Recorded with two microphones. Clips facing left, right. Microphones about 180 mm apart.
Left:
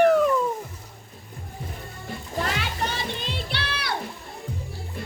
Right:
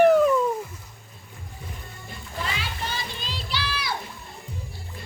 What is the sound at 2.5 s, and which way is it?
Music, 60° left (ahead or behind).